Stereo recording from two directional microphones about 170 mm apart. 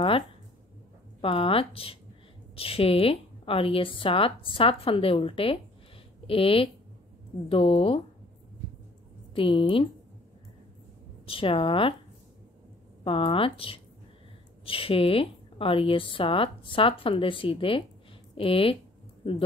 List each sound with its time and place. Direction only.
1.2 s a woman's voice: 30° left (ahead or behind)
9.3 s a woman's voice: 30° left (ahead or behind)
11.2 s a woman's voice: 30° left (ahead or behind)
13.0 s a woman's voice: 30° left (ahead or behind)